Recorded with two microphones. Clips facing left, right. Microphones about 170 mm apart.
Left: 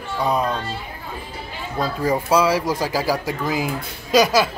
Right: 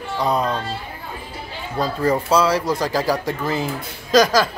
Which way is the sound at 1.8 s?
10° left (ahead or behind).